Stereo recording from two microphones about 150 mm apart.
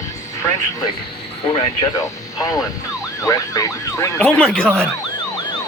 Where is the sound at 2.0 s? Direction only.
25° left (ahead or behind).